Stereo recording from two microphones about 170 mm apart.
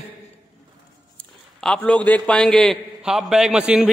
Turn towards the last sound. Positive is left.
turn(degrees=-5)  # may be behind; listen again after turning